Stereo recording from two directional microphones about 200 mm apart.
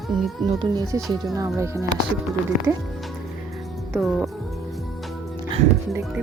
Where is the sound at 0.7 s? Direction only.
15° right (ahead or behind).